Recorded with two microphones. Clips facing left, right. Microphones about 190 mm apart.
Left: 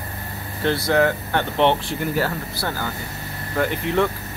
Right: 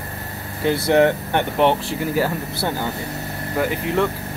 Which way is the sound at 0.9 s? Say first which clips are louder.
Right 4 dB; 25° right (ahead or behind).